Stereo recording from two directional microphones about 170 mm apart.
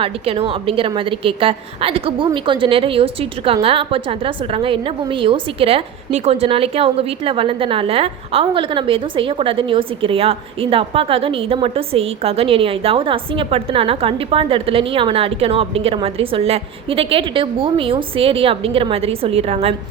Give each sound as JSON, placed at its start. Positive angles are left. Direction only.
{"t": 0.0, "sound": "a woman's voice", "side_deg": -35}